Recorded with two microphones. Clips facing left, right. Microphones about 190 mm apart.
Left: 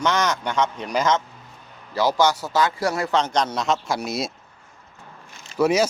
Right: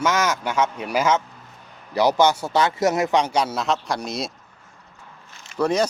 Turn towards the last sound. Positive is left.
turn(degrees=5)  # may be behind; listen again after turning